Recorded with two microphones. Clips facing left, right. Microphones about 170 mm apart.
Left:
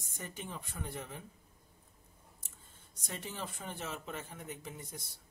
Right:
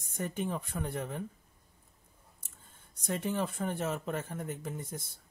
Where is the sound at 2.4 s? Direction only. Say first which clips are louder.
Right 1 dB; 55° right (ahead or behind).